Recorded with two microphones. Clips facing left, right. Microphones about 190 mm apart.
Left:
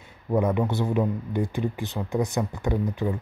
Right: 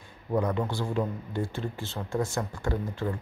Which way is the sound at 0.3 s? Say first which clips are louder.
Left 4 dB; 20° left (ahead or behind).